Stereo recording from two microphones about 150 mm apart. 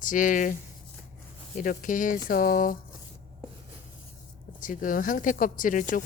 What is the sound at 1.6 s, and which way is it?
Speech, 65° left (ahead or behind).